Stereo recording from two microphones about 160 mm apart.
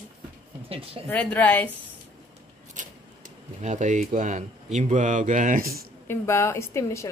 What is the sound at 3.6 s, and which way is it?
Speech, 50° right (ahead or behind).